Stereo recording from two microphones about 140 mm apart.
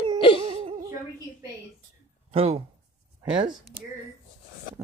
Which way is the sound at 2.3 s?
45° right (ahead or behind).